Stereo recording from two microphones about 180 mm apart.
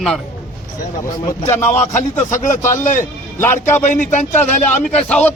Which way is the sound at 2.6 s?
45° left (ahead or behind).